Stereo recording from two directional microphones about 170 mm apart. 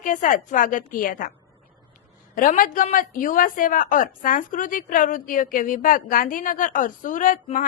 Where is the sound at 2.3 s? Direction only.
55° left (ahead or behind).